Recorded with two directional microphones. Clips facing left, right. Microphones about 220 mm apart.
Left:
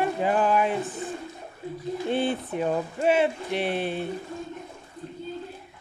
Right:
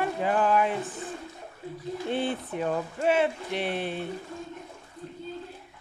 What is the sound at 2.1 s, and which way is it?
Speech, 25° left (ahead or behind).